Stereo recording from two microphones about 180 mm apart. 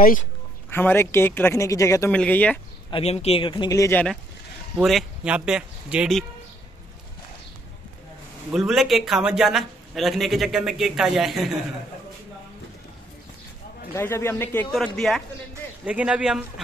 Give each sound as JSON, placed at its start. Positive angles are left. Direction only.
{"t": 0.0, "sound": "a man's voice", "side_deg": 50}
{"t": 0.7, "sound": "speech", "side_deg": 10}
{"t": 2.9, "sound": "speech", "side_deg": 35}
{"t": 4.7, "sound": "a man's voice", "side_deg": 0}
{"t": 8.5, "sound": "a man's voice", "side_deg": 0}
{"t": 13.9, "sound": "speech", "side_deg": 15}
{"t": 15.0, "sound": "a man's voice", "side_deg": 0}